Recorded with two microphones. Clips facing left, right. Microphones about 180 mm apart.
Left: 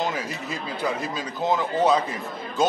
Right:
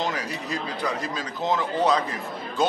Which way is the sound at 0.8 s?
5° left (ahead or behind).